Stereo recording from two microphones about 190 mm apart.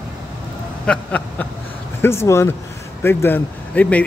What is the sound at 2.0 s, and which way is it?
Speech, 15° left (ahead or behind).